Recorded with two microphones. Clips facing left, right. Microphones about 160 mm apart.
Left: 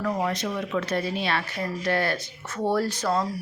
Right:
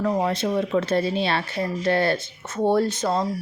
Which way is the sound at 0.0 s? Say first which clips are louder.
Right 4 dB; 30° right (ahead or behind).